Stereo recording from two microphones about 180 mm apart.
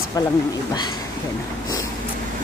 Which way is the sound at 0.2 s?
20° left (ahead or behind).